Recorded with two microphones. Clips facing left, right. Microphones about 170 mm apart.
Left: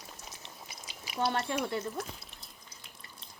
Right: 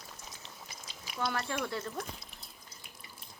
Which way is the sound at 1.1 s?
30° left (ahead or behind).